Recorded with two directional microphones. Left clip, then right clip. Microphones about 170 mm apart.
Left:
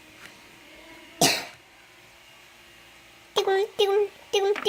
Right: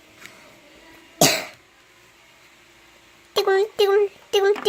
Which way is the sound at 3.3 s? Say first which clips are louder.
Right 4 dB; 20° right (ahead or behind).